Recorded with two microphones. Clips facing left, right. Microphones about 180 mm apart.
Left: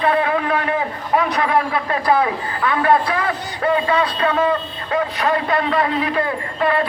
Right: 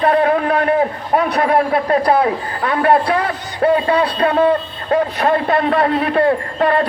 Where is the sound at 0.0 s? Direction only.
45° right (ahead or behind).